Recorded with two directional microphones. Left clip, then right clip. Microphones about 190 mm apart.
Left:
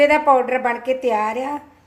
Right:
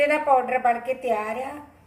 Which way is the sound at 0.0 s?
55° left (ahead or behind).